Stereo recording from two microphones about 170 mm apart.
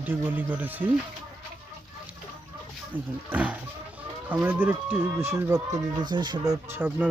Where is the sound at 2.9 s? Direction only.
10° right (ahead or behind); by 6.5 s 25° right (ahead or behind).